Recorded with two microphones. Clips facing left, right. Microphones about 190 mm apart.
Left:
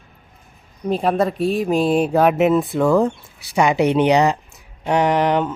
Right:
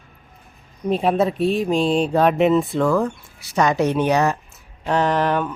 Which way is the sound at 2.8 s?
20° left (ahead or behind).